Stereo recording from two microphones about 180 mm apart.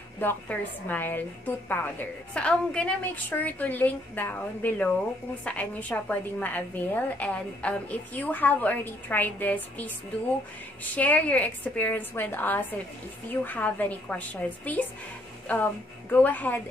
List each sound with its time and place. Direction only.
0.2 s a woman's voice: 10° left (ahead or behind)